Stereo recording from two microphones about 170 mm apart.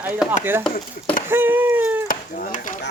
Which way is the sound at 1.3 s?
10° right (ahead or behind).